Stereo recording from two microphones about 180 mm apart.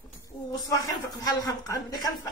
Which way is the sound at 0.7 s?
20° left (ahead or behind).